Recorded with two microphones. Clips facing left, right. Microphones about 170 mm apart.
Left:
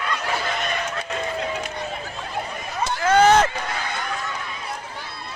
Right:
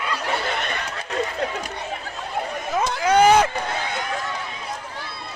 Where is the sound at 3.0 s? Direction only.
10° right (ahead or behind).